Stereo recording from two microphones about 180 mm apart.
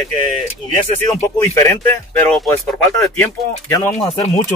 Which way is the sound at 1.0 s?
15° left (ahead or behind).